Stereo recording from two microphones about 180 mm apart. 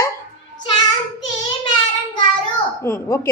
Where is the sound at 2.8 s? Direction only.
15° left (ahead or behind).